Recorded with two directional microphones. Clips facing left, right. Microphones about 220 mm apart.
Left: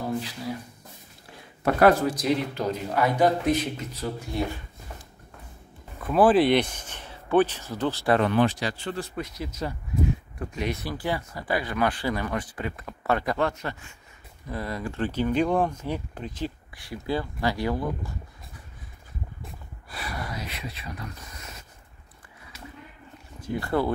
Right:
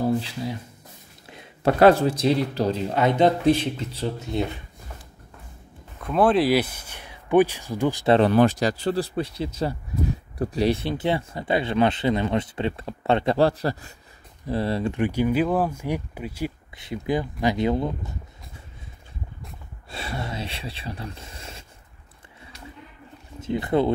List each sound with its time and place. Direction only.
1.2 s speech: 25° right (ahead or behind)
5.9 s speech: 5° left (ahead or behind); by 8.1 s 15° right (ahead or behind)
8.1 s speech: 35° right (ahead or behind)
15.0 s speech: 10° right (ahead or behind)
16.7 s speech: 20° right (ahead or behind)
19.9 s speech: 25° right (ahead or behind)
23.4 s speech: 20° right (ahead or behind)